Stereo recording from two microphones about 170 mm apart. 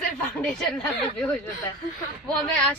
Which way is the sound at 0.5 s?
5° left (ahead or behind).